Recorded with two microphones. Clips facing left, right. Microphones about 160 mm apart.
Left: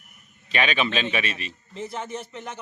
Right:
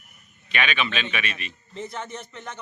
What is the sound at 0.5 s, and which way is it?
A man's voice, 35° left (ahead or behind).